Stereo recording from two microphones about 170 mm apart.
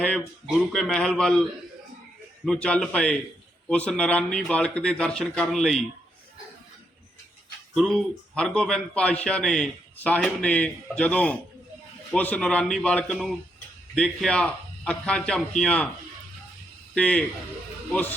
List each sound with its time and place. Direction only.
0.4 s a man's voice: centre (ahead or behind)
7.8 s a man's voice: centre (ahead or behind)
16.9 s a man's voice: 5° left (ahead or behind)